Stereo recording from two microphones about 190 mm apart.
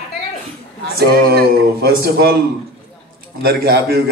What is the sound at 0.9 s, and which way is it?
Speech, 55° right (ahead or behind).